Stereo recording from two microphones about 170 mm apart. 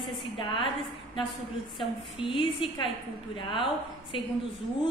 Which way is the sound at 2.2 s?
30° left (ahead or behind).